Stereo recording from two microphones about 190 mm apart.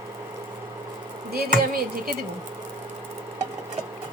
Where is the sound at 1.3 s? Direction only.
55° right (ahead or behind).